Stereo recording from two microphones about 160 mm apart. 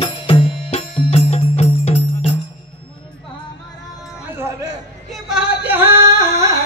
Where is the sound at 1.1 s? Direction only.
40° left (ahead or behind).